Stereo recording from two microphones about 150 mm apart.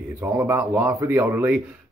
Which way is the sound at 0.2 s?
15° right (ahead or behind).